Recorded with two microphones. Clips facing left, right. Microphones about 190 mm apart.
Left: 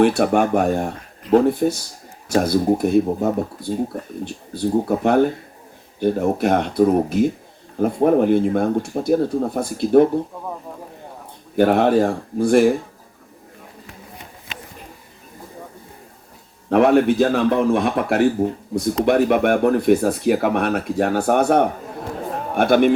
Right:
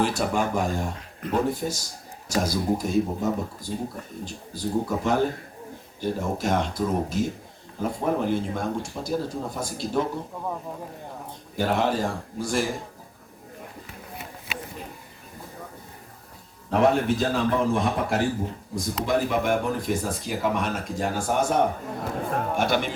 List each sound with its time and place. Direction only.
0.0 s speech: 65° left (ahead or behind)
11.5 s speech: 60° left (ahead or behind)
16.6 s speech: 60° left (ahead or behind)